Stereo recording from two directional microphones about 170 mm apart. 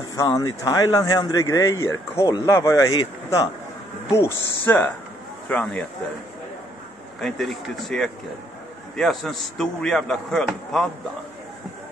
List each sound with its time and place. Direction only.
0.1 s a man's voice: 20° left (ahead or behind)
4.6 s speech: 10° left (ahead or behind)
7.2 s a man's voice: centre (ahead or behind)